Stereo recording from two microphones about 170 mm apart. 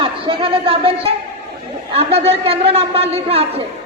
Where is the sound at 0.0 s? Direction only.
30° right (ahead or behind).